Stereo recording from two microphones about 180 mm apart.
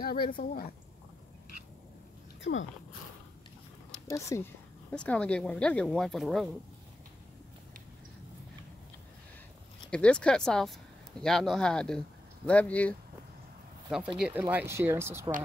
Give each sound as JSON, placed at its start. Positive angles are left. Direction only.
{"t": 0.0, "sound": "speech", "side_deg": 55}
{"t": 4.1, "sound": "speech", "side_deg": 15}
{"t": 4.9, "sound": "speech", "side_deg": 5}
{"t": 9.8, "sound": "speech", "side_deg": 5}
{"t": 13.8, "sound": "speech", "side_deg": -5}